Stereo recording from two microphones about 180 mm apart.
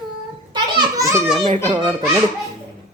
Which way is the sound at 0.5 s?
20° right (ahead or behind).